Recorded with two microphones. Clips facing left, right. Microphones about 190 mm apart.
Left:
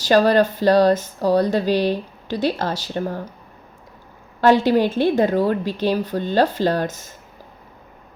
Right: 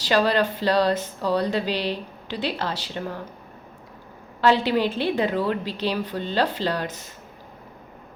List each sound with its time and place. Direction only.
0.0 s speech: 45° left (ahead or behind)
4.4 s speech: 45° left (ahead or behind)